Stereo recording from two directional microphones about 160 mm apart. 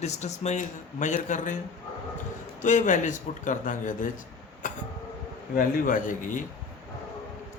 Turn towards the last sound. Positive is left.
turn(degrees=55)  # may be behind; listen again after turning